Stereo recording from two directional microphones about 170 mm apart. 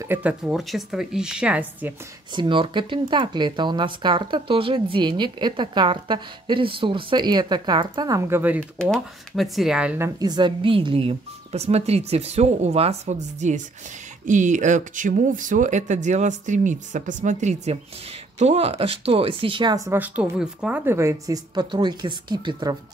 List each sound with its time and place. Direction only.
0.0 s speech: 10° right (ahead or behind)
2.3 s speech: 30° right (ahead or behind); by 8.6 s 10° right (ahead or behind)
8.7 s speech: centre (ahead or behind); by 22.8 s 25° right (ahead or behind)